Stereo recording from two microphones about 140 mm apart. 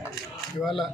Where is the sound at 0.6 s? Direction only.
Centre (ahead or behind).